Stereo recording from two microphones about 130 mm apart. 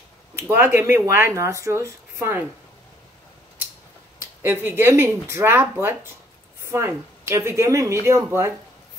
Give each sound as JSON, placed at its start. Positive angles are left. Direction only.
{"t": 0.4, "sound": "speech", "side_deg": -15}
{"t": 4.2, "sound": "speech", "side_deg": -20}